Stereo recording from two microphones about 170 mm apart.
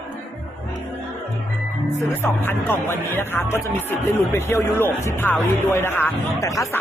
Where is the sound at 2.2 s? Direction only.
10° left (ahead or behind).